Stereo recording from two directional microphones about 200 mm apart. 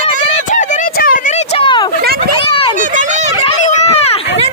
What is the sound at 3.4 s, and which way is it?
Run, 35° left (ahead or behind).